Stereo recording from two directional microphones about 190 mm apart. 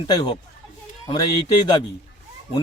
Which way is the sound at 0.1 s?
20° left (ahead or behind).